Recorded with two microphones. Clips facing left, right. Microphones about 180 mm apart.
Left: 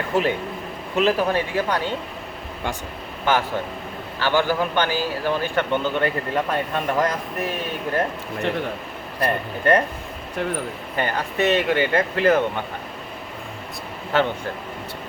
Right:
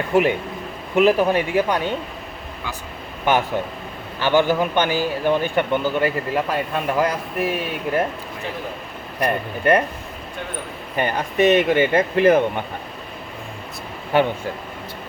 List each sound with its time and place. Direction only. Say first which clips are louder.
0.1 s speech: right 4 dB; 15° right (ahead or behind)
3.2 s speech: right 2 dB; 15° right (ahead or behind)
9.2 s speech: right 2 dB; 15° right (ahead or behind)
10.9 s speech: right 4 dB; 15° right (ahead or behind)
14.1 s speech: right 3 dB; 15° right (ahead or behind)